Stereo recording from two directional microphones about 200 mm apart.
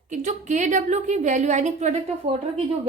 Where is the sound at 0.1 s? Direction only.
35° right (ahead or behind).